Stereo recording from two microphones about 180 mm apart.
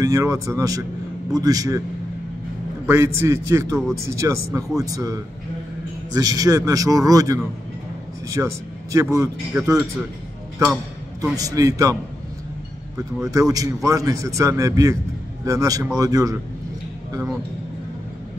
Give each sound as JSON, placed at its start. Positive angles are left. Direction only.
{"t": 0.0, "sound": "a man's voice", "side_deg": -15}
{"t": 2.9, "sound": "a man's voice", "side_deg": -15}
{"t": 13.2, "sound": "a man's voice", "side_deg": -20}